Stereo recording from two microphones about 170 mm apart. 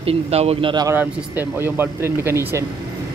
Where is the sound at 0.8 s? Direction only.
10° right (ahead or behind).